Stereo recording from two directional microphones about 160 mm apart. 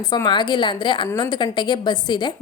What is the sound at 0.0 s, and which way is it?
A woman's voice, 25° left (ahead or behind).